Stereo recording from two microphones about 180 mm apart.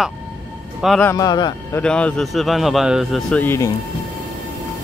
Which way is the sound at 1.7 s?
5° left (ahead or behind).